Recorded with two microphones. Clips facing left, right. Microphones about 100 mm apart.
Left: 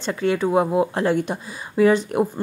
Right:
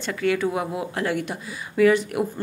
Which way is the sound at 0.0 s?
30° left (ahead or behind).